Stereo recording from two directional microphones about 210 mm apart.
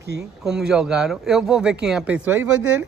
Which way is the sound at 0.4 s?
Centre (ahead or behind).